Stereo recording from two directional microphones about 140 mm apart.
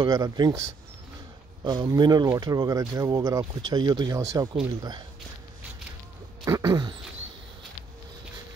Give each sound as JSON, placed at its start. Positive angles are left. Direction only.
{"t": 0.0, "sound": "speech", "side_deg": -30}
{"t": 1.6, "sound": "speech", "side_deg": -30}
{"t": 6.4, "sound": "speech", "side_deg": -25}